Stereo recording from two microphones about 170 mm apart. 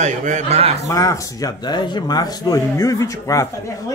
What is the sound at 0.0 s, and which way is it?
Speech, 45° right (ahead or behind).